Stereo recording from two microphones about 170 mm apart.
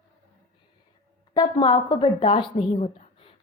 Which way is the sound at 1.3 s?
25° left (ahead or behind).